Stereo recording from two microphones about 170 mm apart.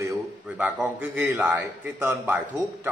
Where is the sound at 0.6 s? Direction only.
5° right (ahead or behind).